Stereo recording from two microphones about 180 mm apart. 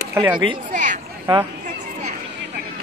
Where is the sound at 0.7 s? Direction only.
45° right (ahead or behind).